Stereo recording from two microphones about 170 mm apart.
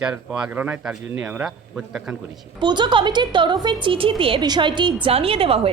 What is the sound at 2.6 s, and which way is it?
A woman's voice, 25° right (ahead or behind).